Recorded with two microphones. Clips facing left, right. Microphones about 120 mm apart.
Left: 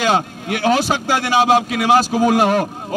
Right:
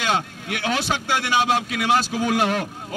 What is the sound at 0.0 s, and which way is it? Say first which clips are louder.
Speech: left 6 dB; 40° left (ahead or behind).